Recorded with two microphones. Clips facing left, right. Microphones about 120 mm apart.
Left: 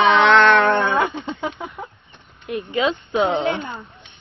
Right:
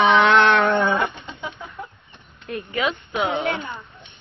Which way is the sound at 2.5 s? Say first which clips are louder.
Left 4 dB; 25° left (ahead or behind).